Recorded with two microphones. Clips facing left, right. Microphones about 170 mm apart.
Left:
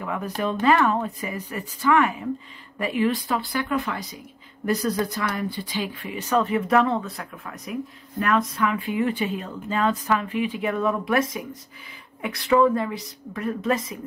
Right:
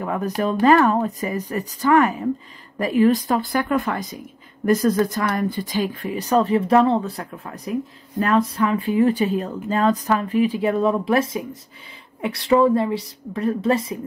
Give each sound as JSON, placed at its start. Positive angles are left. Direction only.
{"t": 0.0, "sound": "a woman's voice", "side_deg": -40}